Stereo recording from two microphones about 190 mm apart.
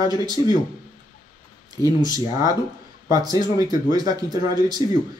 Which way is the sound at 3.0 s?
20° right (ahead or behind).